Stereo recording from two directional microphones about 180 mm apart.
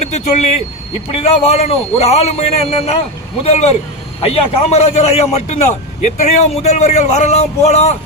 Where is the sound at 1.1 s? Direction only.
35° left (ahead or behind).